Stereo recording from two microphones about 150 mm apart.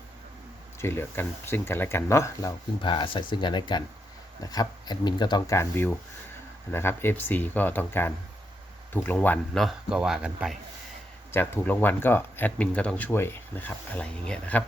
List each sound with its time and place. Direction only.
0.8 s speech: 15° left (ahead or behind)
2.8 s speech: 35° left (ahead or behind); by 9.4 s 10° left (ahead or behind)
9.6 s speech: 5° right (ahead or behind)
11.3 s speech: 15° left (ahead or behind)